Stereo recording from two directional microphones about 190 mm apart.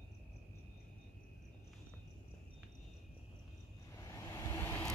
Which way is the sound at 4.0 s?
15° left (ahead or behind).